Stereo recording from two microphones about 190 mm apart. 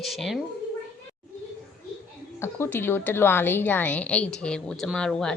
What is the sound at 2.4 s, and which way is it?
A woman's voice, 10° left (ahead or behind).